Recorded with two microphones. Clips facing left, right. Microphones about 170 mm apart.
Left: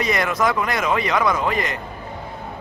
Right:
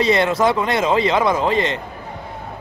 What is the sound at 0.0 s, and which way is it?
Speech, 30° right (ahead or behind).